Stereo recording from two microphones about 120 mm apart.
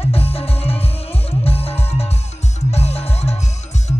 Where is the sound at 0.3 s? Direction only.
55° left (ahead or behind).